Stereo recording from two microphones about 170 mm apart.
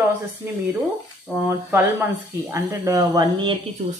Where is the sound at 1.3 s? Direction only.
15° right (ahead or behind).